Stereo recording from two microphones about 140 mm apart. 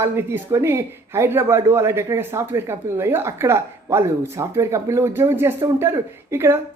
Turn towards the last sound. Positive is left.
turn(degrees=-15)  # may be behind; listen again after turning